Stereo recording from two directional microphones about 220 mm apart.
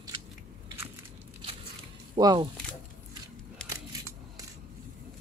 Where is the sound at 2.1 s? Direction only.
20° right (ahead or behind).